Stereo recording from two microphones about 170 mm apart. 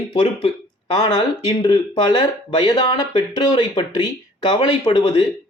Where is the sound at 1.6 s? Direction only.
25° left (ahead or behind).